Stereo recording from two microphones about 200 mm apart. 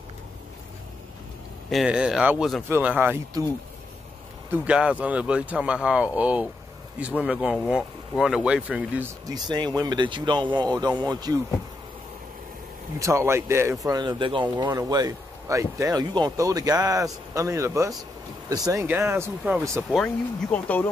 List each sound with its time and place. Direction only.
1.7 s a man's voice: centre (ahead or behind)
4.5 s a man's voice: 5° right (ahead or behind)
9.3 s speech: 20° right (ahead or behind)
13.0 s a man's voice: 15° right (ahead or behind)
20.4 s speech: 10° left (ahead or behind)